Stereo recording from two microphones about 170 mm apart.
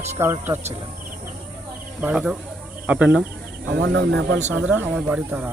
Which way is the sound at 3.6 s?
90° right.